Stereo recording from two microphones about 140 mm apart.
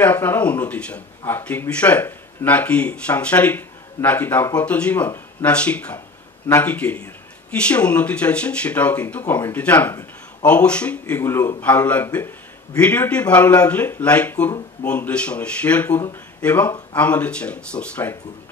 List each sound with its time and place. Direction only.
0.0 s speech: 15° left (ahead or behind)
16.0 s speech: 25° left (ahead or behind)
16.4 s speech: 10° left (ahead or behind)